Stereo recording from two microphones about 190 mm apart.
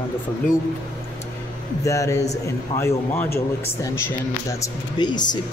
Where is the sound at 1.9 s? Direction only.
15° left (ahead or behind).